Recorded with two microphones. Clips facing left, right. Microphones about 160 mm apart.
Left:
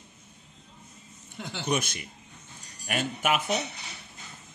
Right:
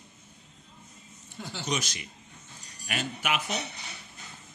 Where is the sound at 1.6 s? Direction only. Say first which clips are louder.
Left 4 dB; 55° left (ahead or behind).